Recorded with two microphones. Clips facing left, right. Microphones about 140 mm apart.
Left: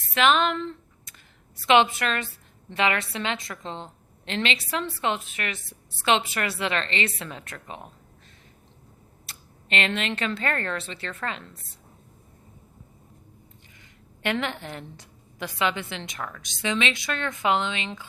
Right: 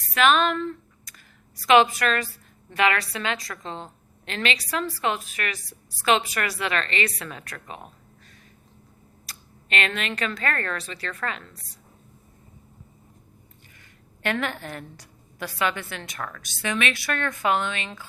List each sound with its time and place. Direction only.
0.1 s a woman's voice: 25° left (ahead or behind)
9.2 s a woman's voice: 25° left (ahead or behind)
14.2 s a woman's voice: 20° left (ahead or behind)